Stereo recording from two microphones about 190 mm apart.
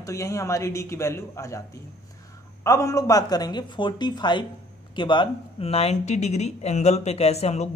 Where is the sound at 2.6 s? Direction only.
15° left (ahead or behind).